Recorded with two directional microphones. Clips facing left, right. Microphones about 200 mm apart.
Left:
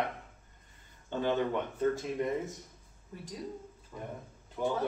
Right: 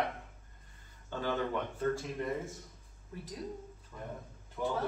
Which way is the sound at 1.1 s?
20° left (ahead or behind).